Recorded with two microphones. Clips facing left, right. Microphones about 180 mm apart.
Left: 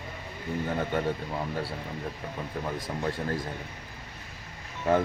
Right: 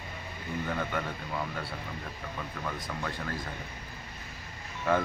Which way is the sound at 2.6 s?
25° left (ahead or behind).